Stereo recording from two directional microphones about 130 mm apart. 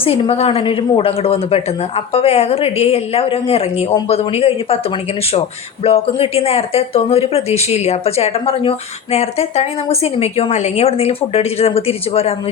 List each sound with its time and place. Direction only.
0.0 s a woman's voice: 50° left (ahead or behind)
5.8 s a woman's voice: 50° left (ahead or behind)